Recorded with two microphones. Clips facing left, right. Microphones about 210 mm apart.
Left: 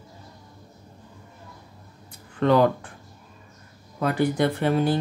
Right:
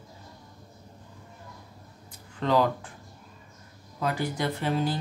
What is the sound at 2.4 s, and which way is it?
Speech, 60° left (ahead or behind).